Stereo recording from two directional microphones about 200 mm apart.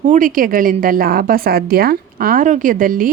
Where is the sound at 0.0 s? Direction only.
40° right (ahead or behind).